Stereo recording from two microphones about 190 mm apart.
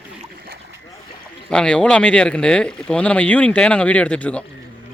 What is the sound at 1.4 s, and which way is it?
Speech, 5° left (ahead or behind).